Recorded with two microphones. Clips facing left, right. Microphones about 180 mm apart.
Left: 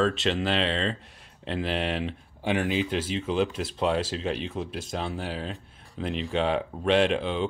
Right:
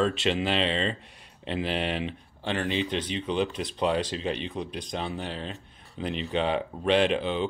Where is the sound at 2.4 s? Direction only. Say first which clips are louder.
Left 2 dB; 10° left (ahead or behind).